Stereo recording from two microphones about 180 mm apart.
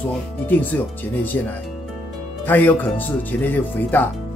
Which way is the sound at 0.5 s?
10° left (ahead or behind).